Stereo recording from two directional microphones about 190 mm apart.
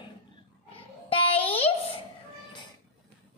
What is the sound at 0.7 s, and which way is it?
Roar, 30° left (ahead or behind).